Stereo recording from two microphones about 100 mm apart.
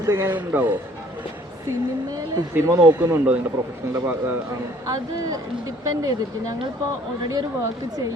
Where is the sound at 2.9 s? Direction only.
20° right (ahead or behind).